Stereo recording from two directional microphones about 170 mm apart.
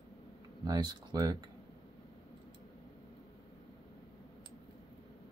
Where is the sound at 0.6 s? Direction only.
25° right (ahead or behind).